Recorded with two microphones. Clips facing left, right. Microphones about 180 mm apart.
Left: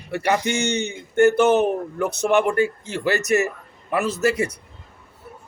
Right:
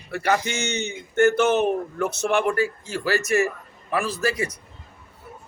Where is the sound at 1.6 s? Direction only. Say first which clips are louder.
Left 1 dB; 20° left (ahead or behind).